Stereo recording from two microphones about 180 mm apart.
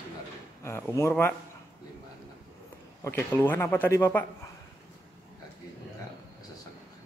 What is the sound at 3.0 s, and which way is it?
A man's voice, 15° left (ahead or behind).